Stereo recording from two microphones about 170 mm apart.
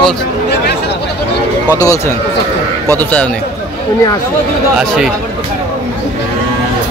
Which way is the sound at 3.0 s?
10° left (ahead or behind).